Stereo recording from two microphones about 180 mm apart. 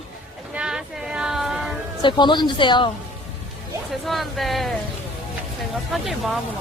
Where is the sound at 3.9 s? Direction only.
Centre (ahead or behind).